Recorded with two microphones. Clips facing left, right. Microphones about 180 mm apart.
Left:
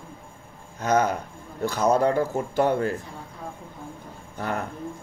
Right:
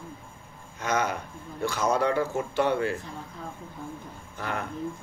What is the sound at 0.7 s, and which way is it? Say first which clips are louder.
A man's voice: left 5 dB; 40° left (ahead or behind).